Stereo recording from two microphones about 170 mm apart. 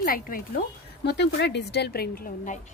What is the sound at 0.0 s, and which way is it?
Speech, 60° left (ahead or behind).